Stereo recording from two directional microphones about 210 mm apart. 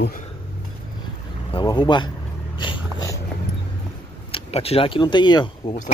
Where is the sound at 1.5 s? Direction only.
25° left (ahead or behind).